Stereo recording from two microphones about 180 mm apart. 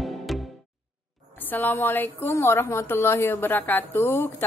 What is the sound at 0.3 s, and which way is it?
Music, centre (ahead or behind).